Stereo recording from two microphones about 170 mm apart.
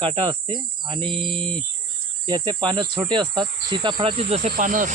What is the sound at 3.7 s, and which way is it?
Speech, 25° right (ahead or behind).